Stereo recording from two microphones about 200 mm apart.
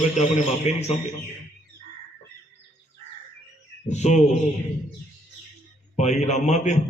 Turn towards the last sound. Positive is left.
turn(degrees=35)  # may be behind; listen again after turning